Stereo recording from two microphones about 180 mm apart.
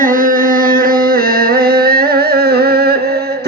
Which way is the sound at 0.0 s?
50° right (ahead or behind).